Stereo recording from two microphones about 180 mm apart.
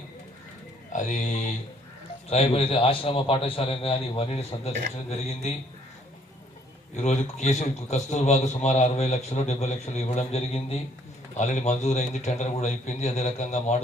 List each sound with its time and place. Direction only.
0.9 s a man's voice: 40° left (ahead or behind)
6.9 s a man's voice: 40° left (ahead or behind)